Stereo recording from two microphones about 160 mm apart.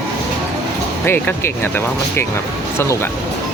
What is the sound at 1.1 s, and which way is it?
Speech, 15° left (ahead or behind).